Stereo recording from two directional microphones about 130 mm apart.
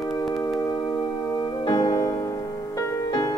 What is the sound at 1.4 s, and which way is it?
Music, 30° left (ahead or behind).